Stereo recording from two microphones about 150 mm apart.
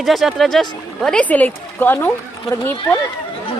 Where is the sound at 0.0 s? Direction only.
Centre (ahead or behind).